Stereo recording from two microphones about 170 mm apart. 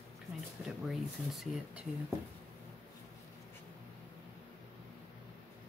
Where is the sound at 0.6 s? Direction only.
Centre (ahead or behind).